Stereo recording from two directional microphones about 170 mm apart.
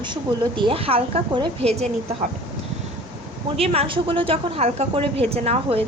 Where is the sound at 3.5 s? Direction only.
35° right (ahead or behind).